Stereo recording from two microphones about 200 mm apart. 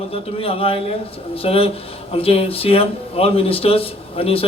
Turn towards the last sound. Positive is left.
turn(degrees=30)  # may be behind; listen again after turning